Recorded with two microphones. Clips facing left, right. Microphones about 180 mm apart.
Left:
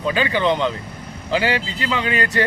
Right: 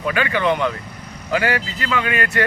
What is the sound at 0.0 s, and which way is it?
Speech, 25° left (ahead or behind).